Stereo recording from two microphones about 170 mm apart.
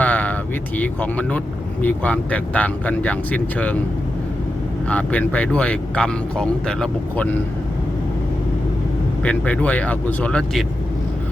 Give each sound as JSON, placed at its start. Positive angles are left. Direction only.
{"t": 0.0, "sound": "vehicle", "side_deg": 10}
{"t": 0.8, "sound": "speech", "side_deg": 10}
{"t": 4.9, "sound": "speech", "side_deg": 10}
{"t": 9.2, "sound": "speech", "side_deg": 10}